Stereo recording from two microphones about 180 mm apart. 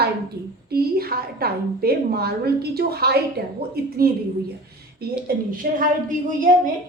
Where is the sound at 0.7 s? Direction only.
55° right (ahead or behind).